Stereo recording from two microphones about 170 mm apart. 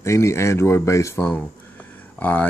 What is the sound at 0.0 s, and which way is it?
Speech, 15° left (ahead or behind).